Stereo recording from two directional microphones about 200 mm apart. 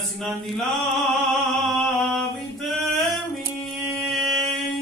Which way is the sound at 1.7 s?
Centre (ahead or behind).